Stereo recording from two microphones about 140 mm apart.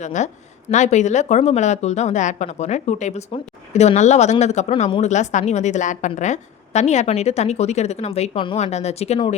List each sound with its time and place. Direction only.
0.0 s a woman's voice: 60° left (ahead or behind); by 9.3 s 40° left (ahead or behind)